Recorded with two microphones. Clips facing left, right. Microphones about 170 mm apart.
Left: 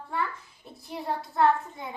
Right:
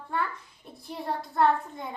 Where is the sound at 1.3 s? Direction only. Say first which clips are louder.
Left 1 dB; centre (ahead or behind).